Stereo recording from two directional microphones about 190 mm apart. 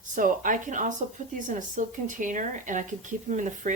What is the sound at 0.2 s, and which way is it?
Speech, 45° right (ahead or behind).